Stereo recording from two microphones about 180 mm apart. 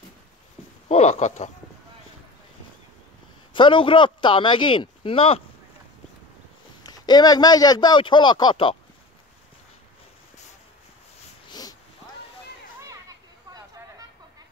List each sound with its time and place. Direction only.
0.8 s speech: 35° left (ahead or behind)
3.5 s speech: 25° left (ahead or behind)
6.8 s speech: 20° left (ahead or behind)
11.4 s a sound: 20° left (ahead or behind)